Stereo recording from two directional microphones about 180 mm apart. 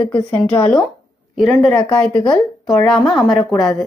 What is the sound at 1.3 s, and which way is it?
Speech, centre (ahead or behind).